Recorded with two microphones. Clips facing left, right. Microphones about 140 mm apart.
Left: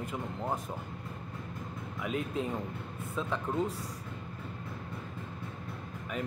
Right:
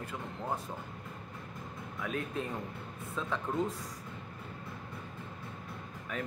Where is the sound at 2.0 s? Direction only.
15° left (ahead or behind).